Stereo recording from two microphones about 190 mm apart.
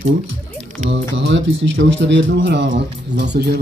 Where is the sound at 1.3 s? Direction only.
75° right (ahead or behind).